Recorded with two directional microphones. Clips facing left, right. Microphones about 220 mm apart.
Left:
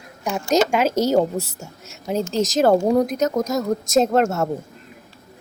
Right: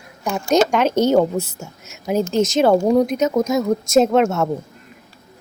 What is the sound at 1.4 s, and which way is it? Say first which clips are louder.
Speech: right 3 dB; 35° left (ahead or behind).